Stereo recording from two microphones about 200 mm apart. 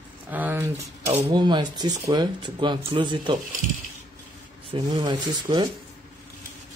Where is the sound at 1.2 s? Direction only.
20° right (ahead or behind).